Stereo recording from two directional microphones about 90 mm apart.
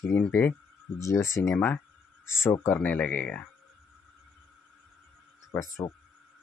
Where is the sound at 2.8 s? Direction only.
15° left (ahead or behind).